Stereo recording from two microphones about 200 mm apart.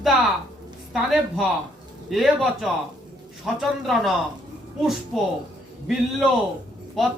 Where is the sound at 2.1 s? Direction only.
Centre (ahead or behind).